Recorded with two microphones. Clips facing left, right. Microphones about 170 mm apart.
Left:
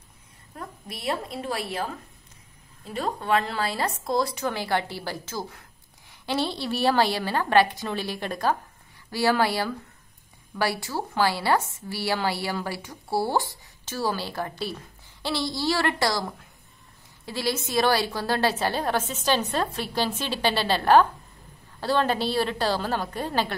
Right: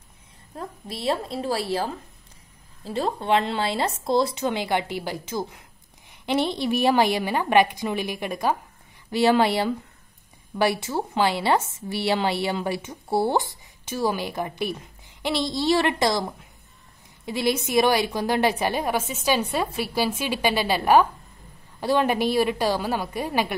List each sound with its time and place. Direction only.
0.6 s a woman's voice: 30° right (ahead or behind); by 23.5 s 10° right (ahead or behind)